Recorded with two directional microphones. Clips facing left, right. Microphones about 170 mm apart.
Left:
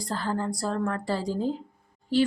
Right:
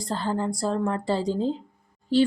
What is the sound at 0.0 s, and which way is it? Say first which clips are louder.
A woman's voice: right 2 dB; 25° right (ahead or behind).